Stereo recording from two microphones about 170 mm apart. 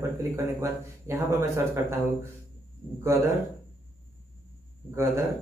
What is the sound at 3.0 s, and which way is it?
Speech, 15° right (ahead or behind).